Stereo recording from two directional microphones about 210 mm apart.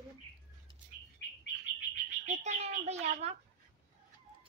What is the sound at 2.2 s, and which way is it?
Bird, 30° right (ahead or behind).